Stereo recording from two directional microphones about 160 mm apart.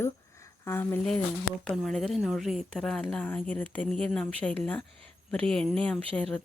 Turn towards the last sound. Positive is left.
turn(degrees=5)  # may be behind; listen again after turning